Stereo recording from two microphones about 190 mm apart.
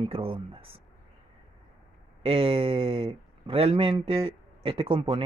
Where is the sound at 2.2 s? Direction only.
30° right (ahead or behind).